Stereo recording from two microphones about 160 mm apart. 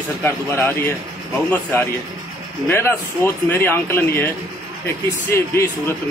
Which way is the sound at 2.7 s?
15° left (ahead or behind).